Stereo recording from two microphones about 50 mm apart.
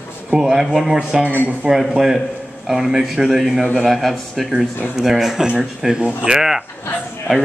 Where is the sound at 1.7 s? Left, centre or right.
Centre.